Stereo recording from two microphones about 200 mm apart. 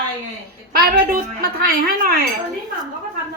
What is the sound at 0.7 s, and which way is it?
Speech, 50° right (ahead or behind).